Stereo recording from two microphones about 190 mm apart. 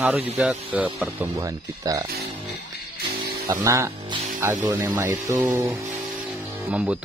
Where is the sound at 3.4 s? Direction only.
15° right (ahead or behind).